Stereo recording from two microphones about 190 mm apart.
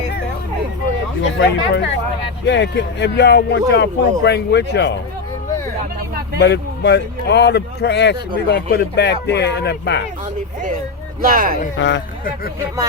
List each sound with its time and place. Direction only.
1.2 s speech: 70° left (ahead or behind)
6.4 s speech: 65° left (ahead or behind)
11.2 s speech: 50° right (ahead or behind)
11.8 s speech: 70° left (ahead or behind)